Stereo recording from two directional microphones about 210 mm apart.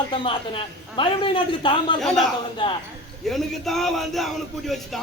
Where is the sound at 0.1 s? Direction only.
25° left (ahead or behind).